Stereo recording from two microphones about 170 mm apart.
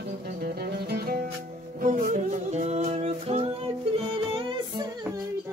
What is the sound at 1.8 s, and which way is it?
Music, 50° right (ahead or behind).